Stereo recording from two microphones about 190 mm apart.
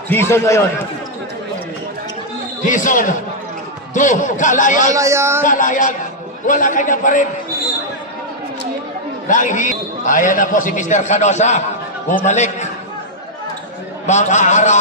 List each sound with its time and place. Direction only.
0.1 s a man's voice: 15° left (ahead or behind)
2.6 s a man's voice: 45° left (ahead or behind)
4.9 s a man's voice: 15° right (ahead or behind)
5.4 s a man's voice: 45° left (ahead or behind)
9.3 s a man's voice: 40° left (ahead or behind)
14.0 s a man's voice: 40° left (ahead or behind)